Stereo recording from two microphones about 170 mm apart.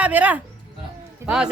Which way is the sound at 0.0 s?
10° right (ahead or behind).